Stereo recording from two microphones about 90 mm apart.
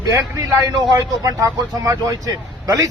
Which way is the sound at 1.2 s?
35° right (ahead or behind).